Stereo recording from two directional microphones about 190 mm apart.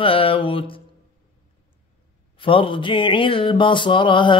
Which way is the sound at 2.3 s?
25° left (ahead or behind).